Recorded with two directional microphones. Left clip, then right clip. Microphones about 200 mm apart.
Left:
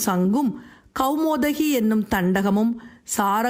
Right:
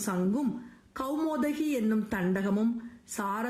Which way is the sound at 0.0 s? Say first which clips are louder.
Left 9 dB; 40° left (ahead or behind).